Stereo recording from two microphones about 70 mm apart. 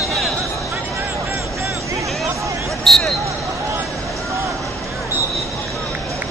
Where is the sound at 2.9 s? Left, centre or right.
Centre.